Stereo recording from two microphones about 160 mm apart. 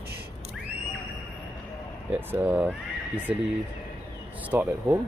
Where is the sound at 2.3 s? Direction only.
10° right (ahead or behind).